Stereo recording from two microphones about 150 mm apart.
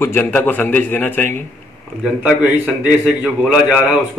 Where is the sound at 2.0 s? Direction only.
5° right (ahead or behind).